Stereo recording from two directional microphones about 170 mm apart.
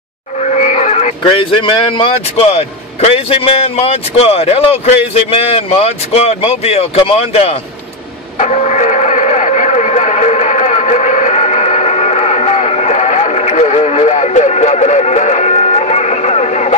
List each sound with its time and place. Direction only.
0.4 s speech: 40° left (ahead or behind)
8.4 s radio: 40° left (ahead or behind)